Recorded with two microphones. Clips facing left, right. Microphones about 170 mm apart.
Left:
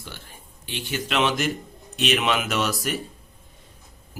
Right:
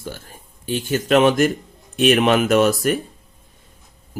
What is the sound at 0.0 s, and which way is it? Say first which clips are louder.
Speech: right 9 dB; 45° right (ahead or behind).